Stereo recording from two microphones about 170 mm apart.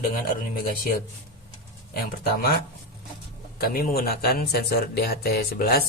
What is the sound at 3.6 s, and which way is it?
Speech, 60° left (ahead or behind).